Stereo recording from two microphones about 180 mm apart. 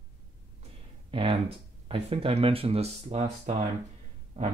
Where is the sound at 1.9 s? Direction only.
30° right (ahead or behind).